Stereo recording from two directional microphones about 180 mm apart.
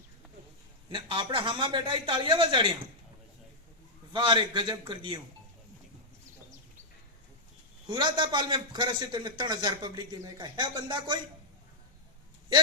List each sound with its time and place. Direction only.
0.9 s a man's voice: 30° right (ahead or behind)
4.1 s a man's voice: 25° right (ahead or behind)
7.9 s a man's voice: 25° right (ahead or behind)